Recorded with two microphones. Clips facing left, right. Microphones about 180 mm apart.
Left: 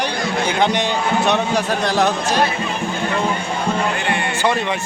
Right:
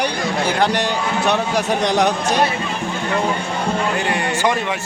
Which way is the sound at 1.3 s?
15° right (ahead or behind).